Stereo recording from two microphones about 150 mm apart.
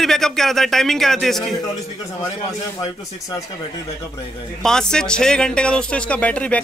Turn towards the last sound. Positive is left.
turn(degrees=10)  # may be behind; listen again after turning